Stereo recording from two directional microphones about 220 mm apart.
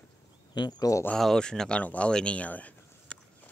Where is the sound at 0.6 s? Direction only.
20° left (ahead or behind).